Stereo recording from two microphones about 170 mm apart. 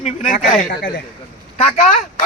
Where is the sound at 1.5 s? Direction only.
40° left (ahead or behind).